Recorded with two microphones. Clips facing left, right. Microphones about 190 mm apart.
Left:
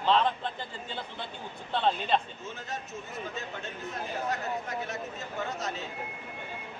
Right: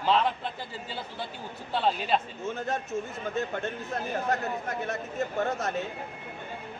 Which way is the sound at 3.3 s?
55° right (ahead or behind).